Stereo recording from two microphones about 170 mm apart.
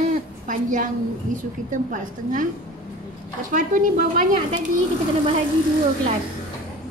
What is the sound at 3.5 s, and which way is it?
Speech, 50° right (ahead or behind).